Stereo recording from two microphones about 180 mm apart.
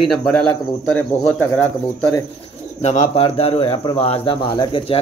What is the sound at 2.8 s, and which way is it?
Speech, 35° left (ahead or behind).